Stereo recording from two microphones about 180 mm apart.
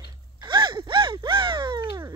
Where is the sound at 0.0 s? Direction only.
25° right (ahead or behind).